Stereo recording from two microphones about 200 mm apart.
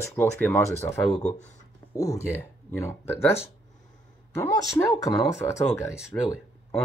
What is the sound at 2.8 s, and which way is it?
Speech, 10° left (ahead or behind).